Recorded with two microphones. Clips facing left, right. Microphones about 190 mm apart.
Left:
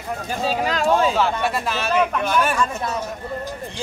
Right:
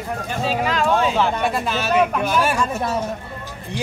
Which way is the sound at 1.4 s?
Centre (ahead or behind).